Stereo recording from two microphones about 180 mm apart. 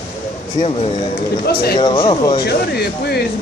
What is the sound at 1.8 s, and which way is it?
Speech, 25° left (ahead or behind).